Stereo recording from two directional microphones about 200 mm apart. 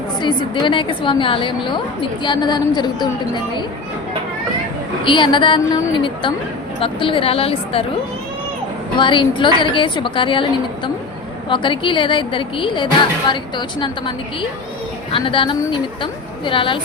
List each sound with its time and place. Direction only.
0.2 s a woman's voice: 25° left (ahead or behind)
5.0 s a woman's voice: 25° left (ahead or behind)
9.0 s a woman's voice: 25° left (ahead or behind)
11.4 s a woman's voice: 25° left (ahead or behind)
15.1 s a woman's voice: 25° left (ahead or behind)